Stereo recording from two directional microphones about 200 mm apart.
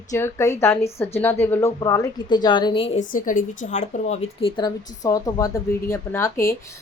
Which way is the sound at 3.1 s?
40° left (ahead or behind).